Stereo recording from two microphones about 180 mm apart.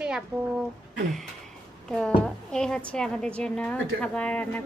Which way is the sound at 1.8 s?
5° left (ahead or behind).